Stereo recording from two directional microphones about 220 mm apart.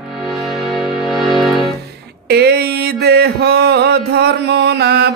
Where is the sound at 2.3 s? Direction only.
45° right (ahead or behind).